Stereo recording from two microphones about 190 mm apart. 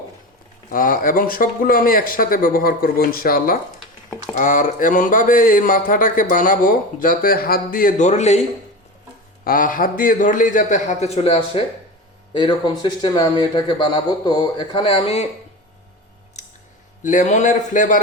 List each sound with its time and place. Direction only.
0.7 s speech: 45° left (ahead or behind)
9.4 s speech: 45° left (ahead or behind); by 15.3 s 30° left (ahead or behind)
17.0 s a man's voice: 40° left (ahead or behind)